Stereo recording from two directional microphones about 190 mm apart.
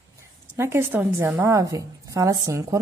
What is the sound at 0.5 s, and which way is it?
Speech, 15° right (ahead or behind).